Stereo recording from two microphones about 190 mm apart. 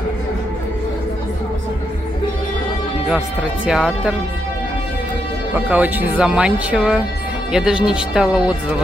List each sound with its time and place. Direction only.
3.6 s speech: 5° right (ahead or behind)
5.7 s speech: 10° right (ahead or behind)